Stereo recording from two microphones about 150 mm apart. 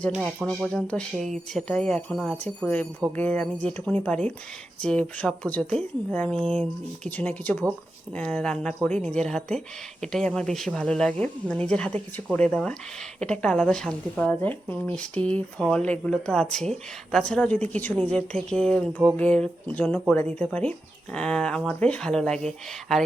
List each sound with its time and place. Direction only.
0.4 s a woman's voice: 5° left (ahead or behind)